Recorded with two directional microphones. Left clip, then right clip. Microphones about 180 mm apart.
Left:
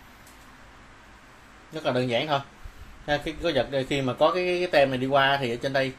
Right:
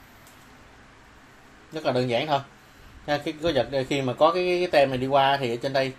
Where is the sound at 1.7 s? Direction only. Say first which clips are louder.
Right 1 dB; centre (ahead or behind).